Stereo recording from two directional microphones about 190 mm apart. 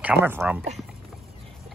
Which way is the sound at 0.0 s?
10° right (ahead or behind).